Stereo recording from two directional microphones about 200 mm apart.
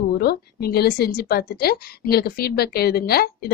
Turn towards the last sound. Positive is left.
turn(degrees=50)  # may be behind; listen again after turning